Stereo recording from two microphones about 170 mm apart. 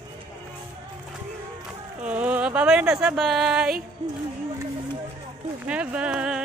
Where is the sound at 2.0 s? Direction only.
5° right (ahead or behind).